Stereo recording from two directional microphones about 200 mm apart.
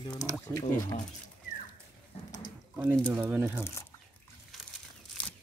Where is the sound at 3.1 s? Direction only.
10° right (ahead or behind).